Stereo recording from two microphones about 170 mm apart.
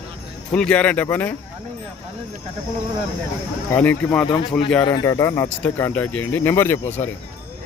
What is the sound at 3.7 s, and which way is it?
Speech, 10° left (ahead or behind).